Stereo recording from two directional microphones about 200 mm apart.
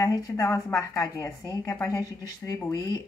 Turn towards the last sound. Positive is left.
turn(degrees=20)  # may be behind; listen again after turning